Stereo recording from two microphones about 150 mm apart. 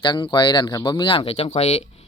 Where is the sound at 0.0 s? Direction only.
30° left (ahead or behind).